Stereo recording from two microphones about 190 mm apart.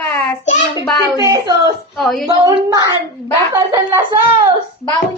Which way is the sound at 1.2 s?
20° right (ahead or behind).